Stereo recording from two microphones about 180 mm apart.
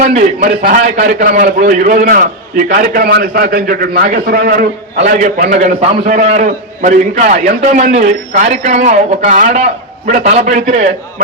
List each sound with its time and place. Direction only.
0.0 s a man's voice: 40° right (ahead or behind)